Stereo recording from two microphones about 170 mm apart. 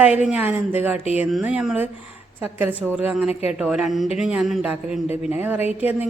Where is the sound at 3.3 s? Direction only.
40° left (ahead or behind).